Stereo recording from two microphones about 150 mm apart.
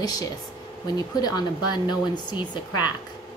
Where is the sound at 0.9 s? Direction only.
25° left (ahead or behind).